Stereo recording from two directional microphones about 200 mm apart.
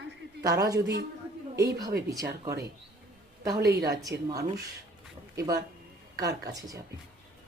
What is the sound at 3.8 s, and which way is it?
Speech, 15° right (ahead or behind).